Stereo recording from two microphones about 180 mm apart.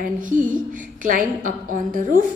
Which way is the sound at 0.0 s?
45° right (ahead or behind).